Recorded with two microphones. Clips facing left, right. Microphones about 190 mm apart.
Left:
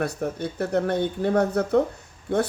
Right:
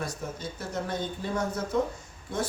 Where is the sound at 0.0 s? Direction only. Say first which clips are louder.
Left 8 dB; 60° left (ahead or behind).